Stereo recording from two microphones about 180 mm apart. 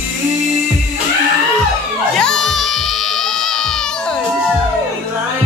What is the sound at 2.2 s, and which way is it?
Music, centre (ahead or behind).